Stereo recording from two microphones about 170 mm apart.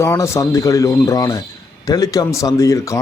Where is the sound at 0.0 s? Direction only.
15° left (ahead or behind).